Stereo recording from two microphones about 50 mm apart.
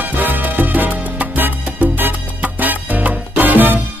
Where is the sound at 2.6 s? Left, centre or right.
Right.